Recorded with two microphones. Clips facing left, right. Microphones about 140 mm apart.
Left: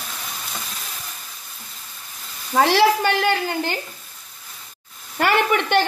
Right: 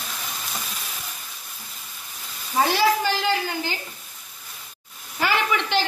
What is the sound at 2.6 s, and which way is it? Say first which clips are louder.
A woman's voice: left 4 dB; 65° left (ahead or behind).